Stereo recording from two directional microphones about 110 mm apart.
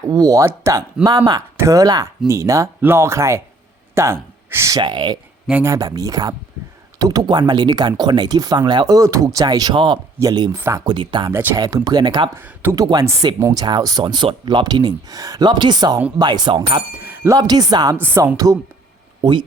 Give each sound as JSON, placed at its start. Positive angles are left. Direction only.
{"t": 0.0, "sound": "speech", "side_deg": -35}
{"t": 4.8, "sound": "speech", "side_deg": -45}
{"t": 5.6, "sound": "speech", "side_deg": -30}
{"t": 9.7, "sound": "speech", "side_deg": -45}
{"t": 10.2, "sound": "speech", "side_deg": -35}
{"t": 10.8, "sound": "speech", "side_deg": -45}
{"t": 11.5, "sound": "speech", "side_deg": -35}
{"t": 17.0, "sound": "speech", "side_deg": -20}
{"t": 17.3, "sound": "speech", "side_deg": -35}
{"t": 17.9, "sound": "speech", "side_deg": -15}
{"t": 18.4, "sound": "speech", "side_deg": -30}
{"t": 19.2, "sound": "speech", "side_deg": -45}